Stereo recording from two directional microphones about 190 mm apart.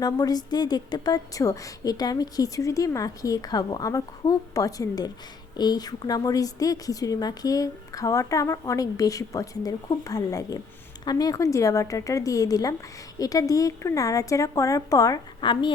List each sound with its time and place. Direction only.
0.0 s a woman's voice: 20° left (ahead or behind)